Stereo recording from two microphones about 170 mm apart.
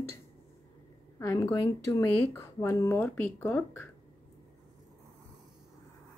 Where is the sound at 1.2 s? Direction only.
20° left (ahead or behind).